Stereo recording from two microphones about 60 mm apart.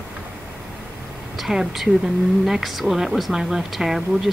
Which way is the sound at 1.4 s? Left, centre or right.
Centre.